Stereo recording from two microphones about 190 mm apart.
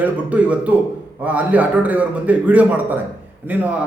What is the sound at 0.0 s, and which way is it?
A man's voice, 5° right (ahead or behind).